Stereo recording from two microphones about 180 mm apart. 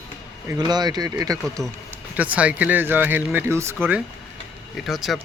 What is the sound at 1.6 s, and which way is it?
Speech, centre (ahead or behind).